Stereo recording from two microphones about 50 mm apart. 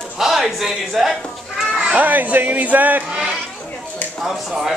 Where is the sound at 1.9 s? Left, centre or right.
Right.